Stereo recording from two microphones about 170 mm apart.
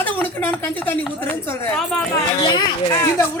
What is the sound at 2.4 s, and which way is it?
Speech, 25° left (ahead or behind).